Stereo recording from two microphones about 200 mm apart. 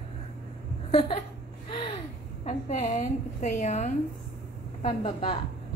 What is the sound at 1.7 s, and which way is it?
Gasp, 25° left (ahead or behind).